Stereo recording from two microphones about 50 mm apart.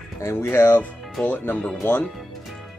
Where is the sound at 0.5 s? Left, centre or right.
Left.